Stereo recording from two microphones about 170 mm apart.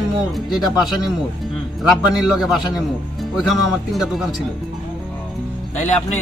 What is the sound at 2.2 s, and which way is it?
Speech, centre (ahead or behind).